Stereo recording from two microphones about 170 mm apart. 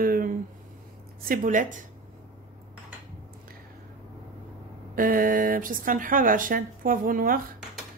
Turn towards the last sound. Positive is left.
turn(degrees=-55)  # may be behind; listen again after turning